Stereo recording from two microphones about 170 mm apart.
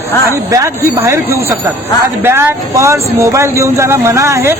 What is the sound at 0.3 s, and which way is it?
Speech, 15° right (ahead or behind).